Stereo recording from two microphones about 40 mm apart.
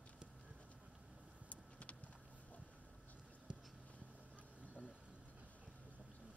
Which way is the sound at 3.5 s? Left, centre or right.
Right.